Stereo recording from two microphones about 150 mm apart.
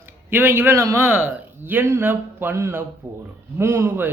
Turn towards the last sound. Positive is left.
turn(degrees=-15)  # may be behind; listen again after turning